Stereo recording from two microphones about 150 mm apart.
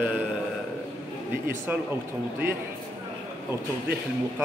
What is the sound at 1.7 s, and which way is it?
Speech, 10° right (ahead or behind).